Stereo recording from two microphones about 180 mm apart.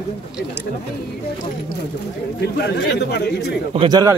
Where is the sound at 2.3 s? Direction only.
65° left (ahead or behind).